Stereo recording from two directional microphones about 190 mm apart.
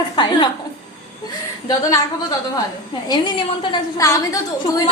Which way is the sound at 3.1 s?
25° left (ahead or behind).